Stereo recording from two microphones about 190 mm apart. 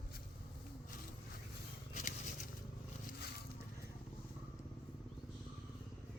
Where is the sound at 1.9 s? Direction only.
40° left (ahead or behind).